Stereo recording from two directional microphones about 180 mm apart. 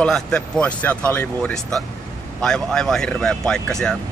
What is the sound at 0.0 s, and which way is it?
Speech, 5° left (ahead or behind).